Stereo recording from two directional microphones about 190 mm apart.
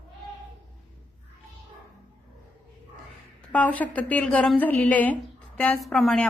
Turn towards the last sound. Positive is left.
turn(degrees=0)  # may be behind; listen again after turning